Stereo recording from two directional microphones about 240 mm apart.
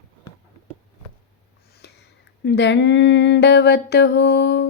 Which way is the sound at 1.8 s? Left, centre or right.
Left.